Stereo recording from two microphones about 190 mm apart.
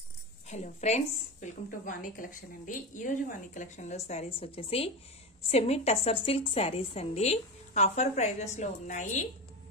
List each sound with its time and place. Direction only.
0.5 s a woman's voice: 35° left (ahead or behind)